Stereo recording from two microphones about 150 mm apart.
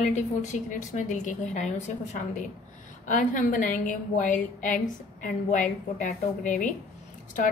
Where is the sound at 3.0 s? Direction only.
60° left (ahead or behind).